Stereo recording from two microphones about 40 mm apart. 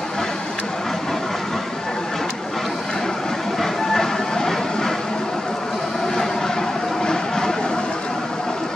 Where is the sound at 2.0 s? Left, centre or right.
Centre.